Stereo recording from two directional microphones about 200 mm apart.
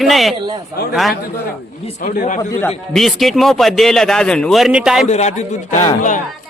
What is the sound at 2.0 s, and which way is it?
Speech, 40° left (ahead or behind).